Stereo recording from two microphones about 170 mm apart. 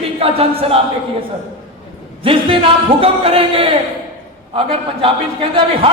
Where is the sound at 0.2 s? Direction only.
35° right (ahead or behind).